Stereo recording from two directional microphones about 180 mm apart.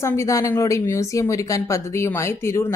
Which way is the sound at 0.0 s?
15° left (ahead or behind).